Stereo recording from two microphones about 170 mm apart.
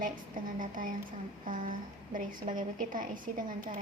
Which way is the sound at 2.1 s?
55° right (ahead or behind).